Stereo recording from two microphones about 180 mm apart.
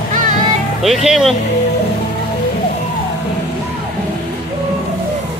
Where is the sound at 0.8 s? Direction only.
Centre (ahead or behind).